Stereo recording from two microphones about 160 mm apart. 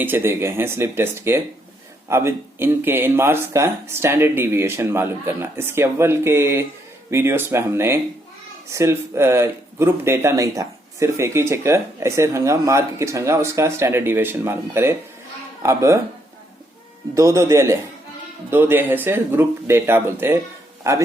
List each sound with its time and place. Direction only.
0.0 s speech: 15° right (ahead or behind)
17.2 s speech: 20° right (ahead or behind)